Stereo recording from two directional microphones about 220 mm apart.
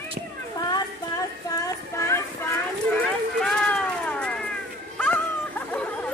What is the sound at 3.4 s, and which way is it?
Cat, 5° left (ahead or behind).